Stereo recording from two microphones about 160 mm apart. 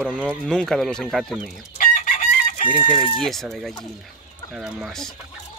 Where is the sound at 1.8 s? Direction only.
60° left (ahead or behind).